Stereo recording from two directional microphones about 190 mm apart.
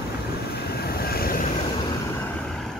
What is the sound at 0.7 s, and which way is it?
Vehicle, 55° left (ahead or behind).